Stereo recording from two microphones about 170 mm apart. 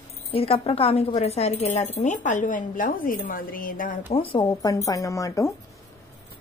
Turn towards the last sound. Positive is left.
turn(degrees=20)  # may be behind; listen again after turning